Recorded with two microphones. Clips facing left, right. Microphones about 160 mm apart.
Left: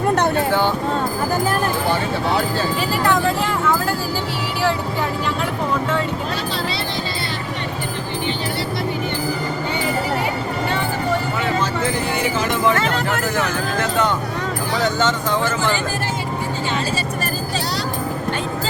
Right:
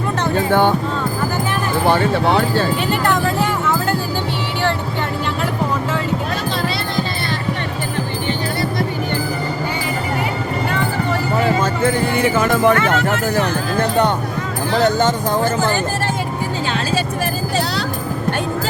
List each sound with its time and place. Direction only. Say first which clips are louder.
1.9 s speech: right 9 dB; 65° right (ahead or behind)
3.1 s vehicle: left 1 dB; centre (ahead or behind)
12.1 s a sound: right 5 dB; 55° right (ahead or behind)
14.8 s speech: right 5 dB; 55° right (ahead or behind)